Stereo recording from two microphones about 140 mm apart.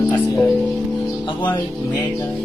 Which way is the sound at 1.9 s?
20° left (ahead or behind).